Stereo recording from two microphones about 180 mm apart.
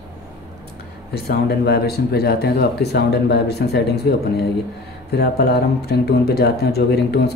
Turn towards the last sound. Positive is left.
turn(degrees=65)  # may be behind; listen again after turning